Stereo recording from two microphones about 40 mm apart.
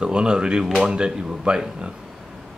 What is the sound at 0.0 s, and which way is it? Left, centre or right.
Speech, right.